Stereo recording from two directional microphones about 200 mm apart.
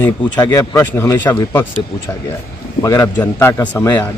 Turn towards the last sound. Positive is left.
turn(degrees=10)  # may be behind; listen again after turning